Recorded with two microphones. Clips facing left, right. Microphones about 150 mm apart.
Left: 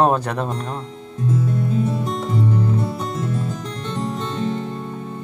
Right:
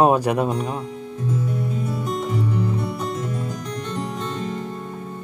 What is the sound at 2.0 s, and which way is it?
Music, 30° left (ahead or behind).